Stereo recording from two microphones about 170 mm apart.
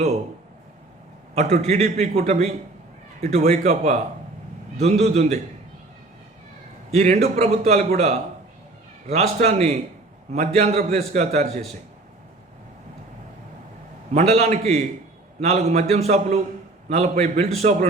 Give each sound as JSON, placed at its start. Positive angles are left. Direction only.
{"t": 1.4, "sound": "a man's voice", "side_deg": -40}
{"t": 6.9, "sound": "a man's voice", "side_deg": -40}
{"t": 14.1, "sound": "a man's voice", "side_deg": -40}